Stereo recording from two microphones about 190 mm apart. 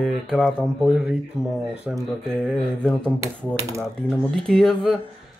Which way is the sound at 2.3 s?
5° left (ahead or behind).